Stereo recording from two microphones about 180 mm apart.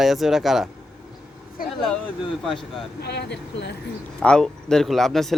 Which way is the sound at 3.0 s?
65° left (ahead or behind).